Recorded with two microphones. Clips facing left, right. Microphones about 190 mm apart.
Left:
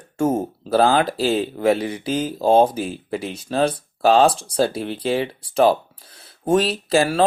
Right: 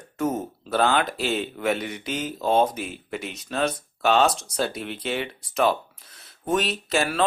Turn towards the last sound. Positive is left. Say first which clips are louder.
# left 6 dB
turn(degrees=35)  # may be behind; listen again after turning